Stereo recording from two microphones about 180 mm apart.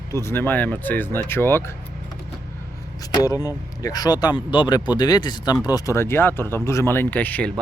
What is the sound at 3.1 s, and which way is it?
Speech, 20° left (ahead or behind).